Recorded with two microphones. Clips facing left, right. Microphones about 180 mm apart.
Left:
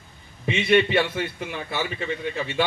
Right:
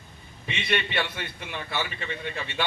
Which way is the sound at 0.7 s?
45° left (ahead or behind).